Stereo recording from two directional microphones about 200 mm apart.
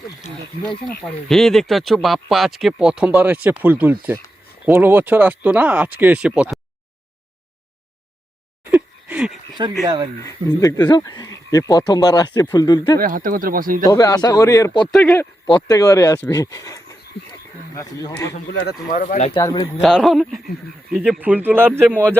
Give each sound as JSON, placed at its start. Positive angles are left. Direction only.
{"t": 1.0, "sound": "speech", "side_deg": 0}
{"t": 8.7, "sound": "a sound", "side_deg": -5}
{"t": 10.2, "sound": "speech", "side_deg": 15}
{"t": 13.0, "sound": "speech", "side_deg": -45}
{"t": 13.8, "sound": "speech", "side_deg": 20}
{"t": 18.5, "sound": "speech", "side_deg": 50}
{"t": 19.3, "sound": "speech", "side_deg": 20}
{"t": 19.8, "sound": "speech", "side_deg": 0}